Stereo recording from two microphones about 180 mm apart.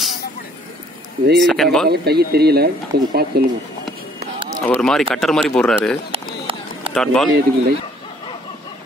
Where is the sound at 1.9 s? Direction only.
65° right (ahead or behind).